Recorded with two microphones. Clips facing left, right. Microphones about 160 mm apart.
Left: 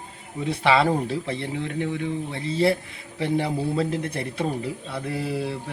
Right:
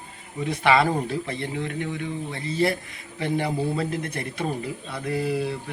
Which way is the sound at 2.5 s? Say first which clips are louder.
Left 2 dB; 25° left (ahead or behind).